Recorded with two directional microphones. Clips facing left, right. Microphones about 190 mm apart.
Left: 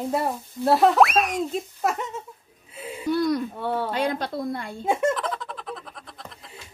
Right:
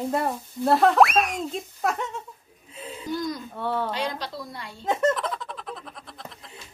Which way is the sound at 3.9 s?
55° left (ahead or behind).